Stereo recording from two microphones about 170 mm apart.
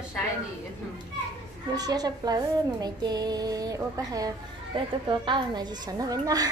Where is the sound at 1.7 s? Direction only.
20° right (ahead or behind).